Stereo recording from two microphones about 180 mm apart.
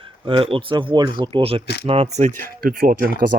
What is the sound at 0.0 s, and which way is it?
Speech, 30° right (ahead or behind).